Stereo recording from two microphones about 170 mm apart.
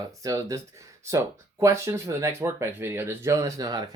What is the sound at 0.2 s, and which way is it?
Speech, 20° right (ahead or behind).